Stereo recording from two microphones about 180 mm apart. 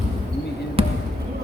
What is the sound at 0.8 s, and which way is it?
Basketball bounce, 30° right (ahead or behind).